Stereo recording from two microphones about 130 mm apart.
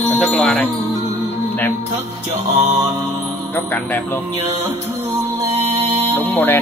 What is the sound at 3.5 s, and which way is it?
Speech, 15° left (ahead or behind).